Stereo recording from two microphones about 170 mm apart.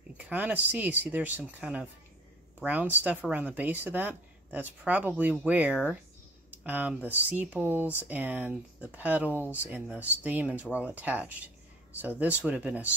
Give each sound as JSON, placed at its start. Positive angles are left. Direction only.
{"t": 0.2, "sound": "speech", "side_deg": -10}